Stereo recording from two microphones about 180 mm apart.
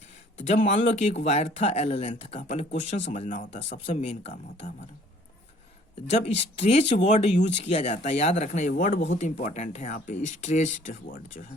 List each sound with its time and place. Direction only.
0.4 s speech: 40° left (ahead or behind)
6.1 s speech: 35° left (ahead or behind)